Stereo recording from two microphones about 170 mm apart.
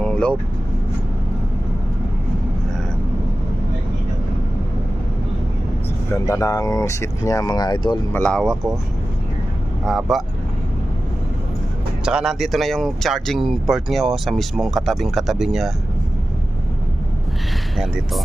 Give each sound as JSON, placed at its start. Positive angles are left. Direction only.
{"t": 0.0, "sound": "vehicle", "side_deg": 5}
{"t": 6.1, "sound": "speech", "side_deg": 20}
{"t": 8.1, "sound": "speech", "side_deg": 5}
{"t": 9.8, "sound": "speech", "side_deg": 0}
{"t": 12.0, "sound": "speech", "side_deg": -5}
{"t": 17.7, "sound": "speech", "side_deg": 0}